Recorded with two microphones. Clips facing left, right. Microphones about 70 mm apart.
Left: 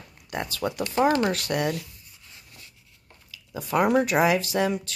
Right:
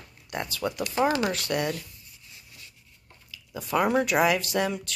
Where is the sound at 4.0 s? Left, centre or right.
Left.